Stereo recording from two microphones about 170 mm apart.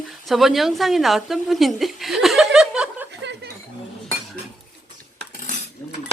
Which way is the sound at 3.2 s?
90° right.